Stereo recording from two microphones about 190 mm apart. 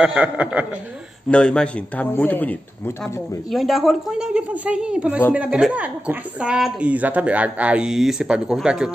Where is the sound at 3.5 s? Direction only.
Centre (ahead or behind).